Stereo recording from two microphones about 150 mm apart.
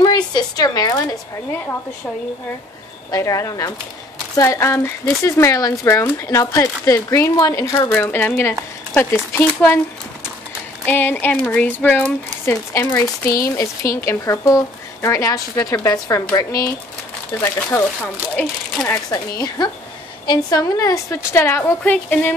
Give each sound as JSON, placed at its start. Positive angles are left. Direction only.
{"t": 0.0, "sound": "a woman's voice", "side_deg": 25}
{"t": 3.1, "sound": "speech", "side_deg": 20}
{"t": 10.9, "sound": "a woman's voice", "side_deg": 15}
{"t": 19.0, "sound": "a woman's voice", "side_deg": 25}